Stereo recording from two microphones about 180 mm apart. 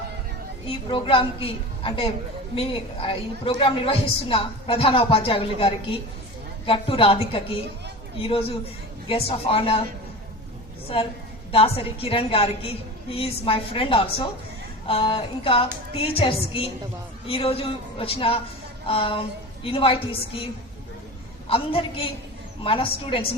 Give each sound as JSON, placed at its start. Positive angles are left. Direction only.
{"t": 0.7, "sound": "a woman's voice", "side_deg": 30}
{"t": 11.5, "sound": "a woman's voice", "side_deg": 30}
{"t": 21.5, "sound": "a woman's voice", "side_deg": 30}